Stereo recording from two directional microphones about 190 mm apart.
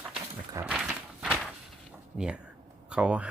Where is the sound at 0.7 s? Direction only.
Centre (ahead or behind).